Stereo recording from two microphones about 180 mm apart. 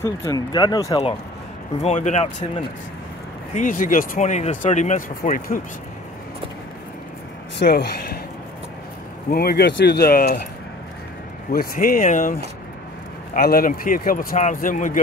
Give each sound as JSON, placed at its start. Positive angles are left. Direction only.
{"t": 0.0, "sound": "speech", "side_deg": 15}
{"t": 1.8, "sound": "speech", "side_deg": 40}
{"t": 3.5, "sound": "speech", "side_deg": 50}
{"t": 7.5, "sound": "speech", "side_deg": 70}
{"t": 9.3, "sound": "speech", "side_deg": 60}
{"t": 11.5, "sound": "speech", "side_deg": 55}